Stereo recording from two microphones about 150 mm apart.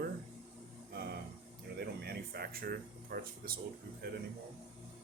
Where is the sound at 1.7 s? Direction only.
90° right.